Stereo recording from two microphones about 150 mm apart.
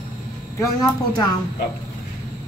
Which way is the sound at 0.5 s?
20° left (ahead or behind).